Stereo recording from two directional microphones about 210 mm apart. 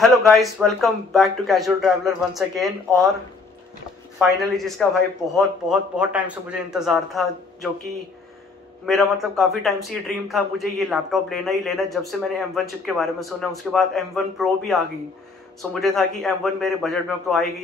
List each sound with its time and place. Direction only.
0.3 s a man's voice: centre (ahead or behind)
4.2 s a man's voice: centre (ahead or behind)